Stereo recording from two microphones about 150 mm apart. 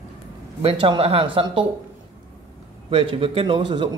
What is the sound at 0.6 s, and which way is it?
A man's voice, 35° right (ahead or behind).